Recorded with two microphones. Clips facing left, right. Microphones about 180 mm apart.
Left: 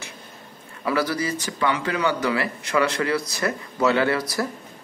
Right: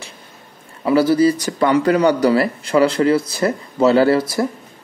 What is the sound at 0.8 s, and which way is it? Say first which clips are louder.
Speech: right 10 dB; 25° right (ahead or behind).